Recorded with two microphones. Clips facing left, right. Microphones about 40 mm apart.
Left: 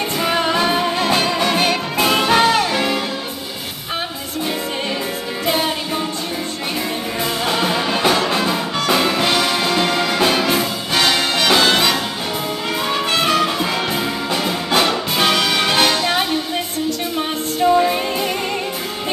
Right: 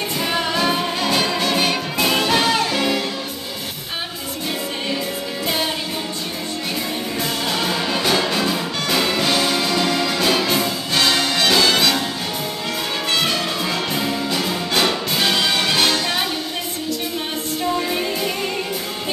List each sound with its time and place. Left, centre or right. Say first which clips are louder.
0.2 s music: left 3 dB; left
7.4 s music: left 4 dB; left
8.4 s music: left 2 dB; centre
13.1 s music: left 3 dB; left
17.7 s music: left 5 dB; left